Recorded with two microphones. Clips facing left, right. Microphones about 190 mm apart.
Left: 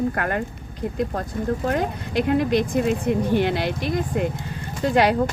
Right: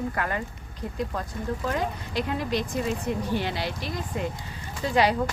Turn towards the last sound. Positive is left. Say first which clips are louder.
# left 4 dB
turn(degrees=55)  # may be behind; listen again after turning